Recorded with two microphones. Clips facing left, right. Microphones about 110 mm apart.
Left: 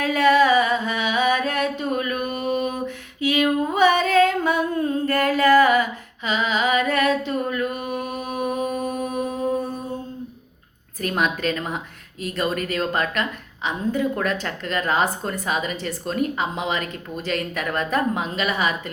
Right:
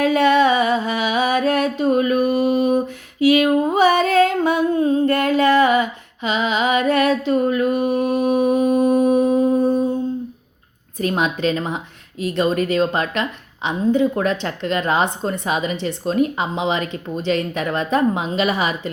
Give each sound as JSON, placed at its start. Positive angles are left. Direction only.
{"t": 0.0, "sound": "a sound", "side_deg": -30}
{"t": 7.8, "sound": "mantra", "side_deg": -35}
{"t": 11.4, "sound": "a woman's voice", "side_deg": -30}